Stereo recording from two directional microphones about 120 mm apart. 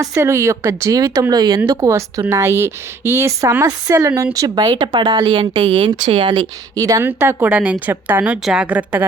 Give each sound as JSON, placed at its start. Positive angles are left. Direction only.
{"t": 0.0, "sound": "a woman's voice", "side_deg": -25}
{"t": 1.9, "sound": "a woman's voice", "side_deg": -25}
{"t": 6.7, "sound": "a woman's voice", "side_deg": -30}
{"t": 7.0, "sound": "a woman's voice", "side_deg": -20}
{"t": 7.5, "sound": "a woman's voice", "side_deg": -10}